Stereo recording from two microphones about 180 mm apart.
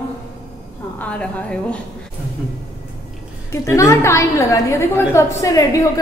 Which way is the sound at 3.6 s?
15° left (ahead or behind).